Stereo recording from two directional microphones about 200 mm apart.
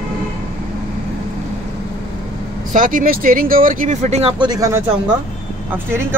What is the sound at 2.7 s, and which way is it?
Speech, 40° right (ahead or behind).